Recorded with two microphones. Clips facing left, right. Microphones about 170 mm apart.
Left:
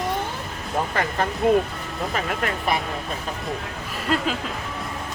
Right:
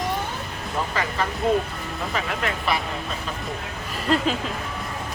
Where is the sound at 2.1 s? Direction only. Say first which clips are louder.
Left 1 dB; 45° left (ahead or behind).